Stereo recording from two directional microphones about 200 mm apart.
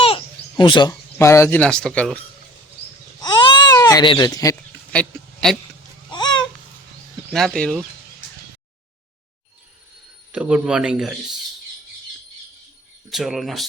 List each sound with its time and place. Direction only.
0.0 s speech: 25° left (ahead or behind); by 2.1 s 5° left (ahead or behind)
3.2 s baby cry: 20° left (ahead or behind)
4.9 s a sound: 5° left (ahead or behind)
6.1 s a sound: 20° left (ahead or behind)
7.3 s a man's voice: 5° left (ahead or behind)
10.3 s a man's voice: 5° right (ahead or behind)
13.1 s a man's voice: centre (ahead or behind)